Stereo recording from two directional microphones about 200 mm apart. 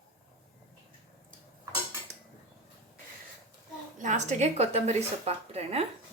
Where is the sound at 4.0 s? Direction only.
35° right (ahead or behind).